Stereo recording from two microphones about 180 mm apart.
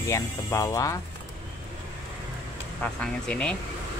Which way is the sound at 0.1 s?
15° left (ahead or behind).